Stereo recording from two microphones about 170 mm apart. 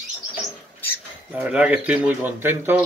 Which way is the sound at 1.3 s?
10° right (ahead or behind).